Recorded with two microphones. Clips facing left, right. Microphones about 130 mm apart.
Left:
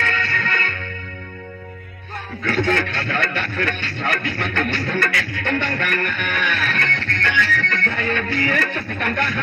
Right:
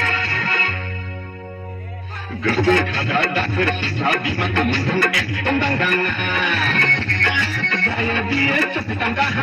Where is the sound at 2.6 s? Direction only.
10° right (ahead or behind).